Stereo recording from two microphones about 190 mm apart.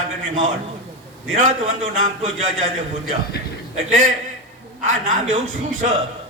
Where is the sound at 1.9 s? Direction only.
40° right (ahead or behind).